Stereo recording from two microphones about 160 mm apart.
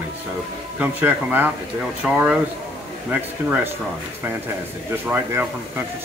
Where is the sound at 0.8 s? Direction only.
10° right (ahead or behind).